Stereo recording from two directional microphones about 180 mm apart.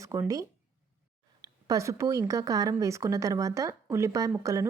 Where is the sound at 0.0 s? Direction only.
20° right (ahead or behind).